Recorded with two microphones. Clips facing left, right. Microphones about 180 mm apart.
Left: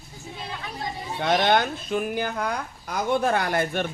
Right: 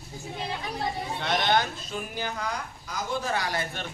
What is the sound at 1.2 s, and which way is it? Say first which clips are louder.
Speech: left 5 dB; 50° left (ahead or behind).